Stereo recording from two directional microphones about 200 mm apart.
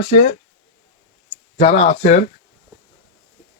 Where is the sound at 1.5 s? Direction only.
40° left (ahead or behind).